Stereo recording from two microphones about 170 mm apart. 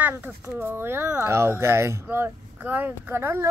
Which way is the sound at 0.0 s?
15° right (ahead or behind).